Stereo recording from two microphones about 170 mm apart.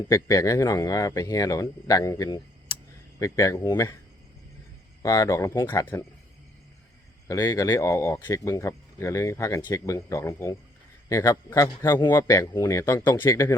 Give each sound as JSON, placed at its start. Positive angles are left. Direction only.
{"t": 0.1, "sound": "speech", "side_deg": 20}
{"t": 5.0, "sound": "speech", "side_deg": 20}
{"t": 7.3, "sound": "speech", "side_deg": 20}